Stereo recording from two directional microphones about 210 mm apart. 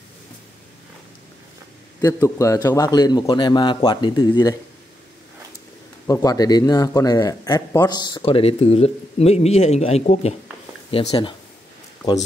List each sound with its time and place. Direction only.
2.0 s a man's voice: 15° left (ahead or behind)
6.0 s a man's voice: 15° left (ahead or behind)